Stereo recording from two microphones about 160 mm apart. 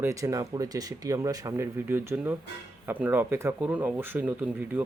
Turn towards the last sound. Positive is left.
turn(degrees=-10)  # may be behind; listen again after turning